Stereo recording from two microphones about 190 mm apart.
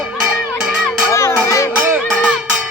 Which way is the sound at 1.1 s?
15° left (ahead or behind).